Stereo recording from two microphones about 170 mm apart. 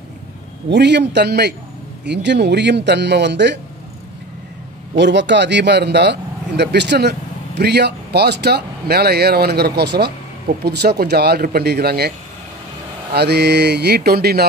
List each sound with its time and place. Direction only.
0.7 s a man's voice: 90° right
4.9 s a man's voice: 90° right; by 12.1 s 70° right (ahead or behind)
13.1 s a man's voice: 75° right (ahead or behind)